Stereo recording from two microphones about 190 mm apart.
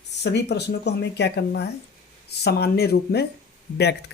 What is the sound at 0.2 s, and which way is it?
A woman's voice, 60° left (ahead or behind).